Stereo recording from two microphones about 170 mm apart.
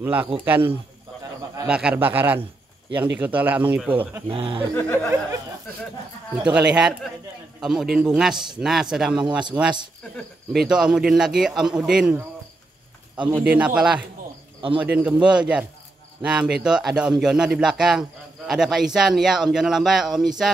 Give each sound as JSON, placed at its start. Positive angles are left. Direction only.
{"t": 0.0, "sound": "speech", "side_deg": -10}
{"t": 4.3, "sound": "speech", "side_deg": -30}
{"t": 4.7, "sound": "speech", "side_deg": 10}
{"t": 6.3, "sound": "speech", "side_deg": -5}
{"t": 10.1, "sound": "speech", "side_deg": 0}
{"t": 13.3, "sound": "speech", "side_deg": -5}